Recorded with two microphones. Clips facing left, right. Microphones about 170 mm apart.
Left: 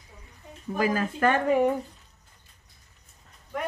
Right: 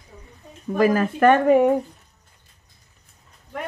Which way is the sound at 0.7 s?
65° right (ahead or behind).